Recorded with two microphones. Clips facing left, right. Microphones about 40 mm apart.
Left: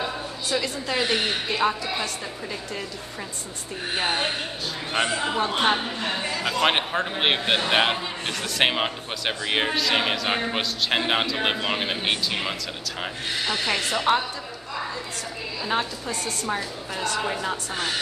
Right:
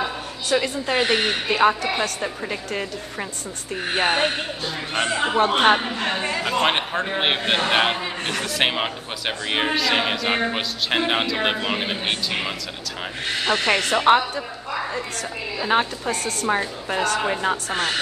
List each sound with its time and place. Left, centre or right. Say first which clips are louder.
0.6 s speech: right 4 dB; right
3.9 s speech: right 5 dB; right
6.7 s a man's voice: right 1 dB; centre
13.5 s speech: right 6 dB; right
13.9 s speech: right 6 dB; right
15.6 s a woman's voice: right 6 dB; right
17.6 s speech: right 5 dB; right